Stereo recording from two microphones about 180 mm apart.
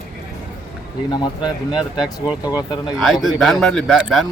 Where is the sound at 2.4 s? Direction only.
20° left (ahead or behind).